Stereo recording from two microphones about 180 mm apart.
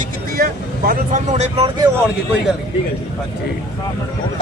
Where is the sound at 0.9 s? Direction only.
40° right (ahead or behind).